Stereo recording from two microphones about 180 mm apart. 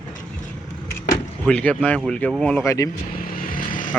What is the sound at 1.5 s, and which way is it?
Speech, 5° left (ahead or behind).